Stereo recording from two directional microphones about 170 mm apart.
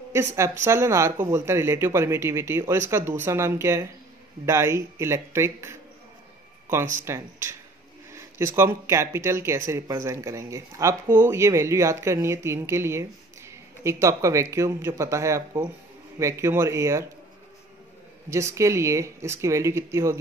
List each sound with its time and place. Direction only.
0.1 s speech: 15° right (ahead or behind)
18.3 s speech: 15° right (ahead or behind)